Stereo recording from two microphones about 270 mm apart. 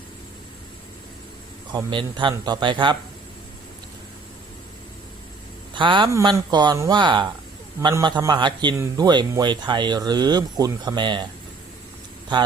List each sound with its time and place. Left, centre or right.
1.7 s a man's voice: centre
5.7 s a man's voice: centre